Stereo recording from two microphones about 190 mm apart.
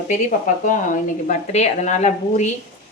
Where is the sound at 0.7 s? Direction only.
40° left (ahead or behind).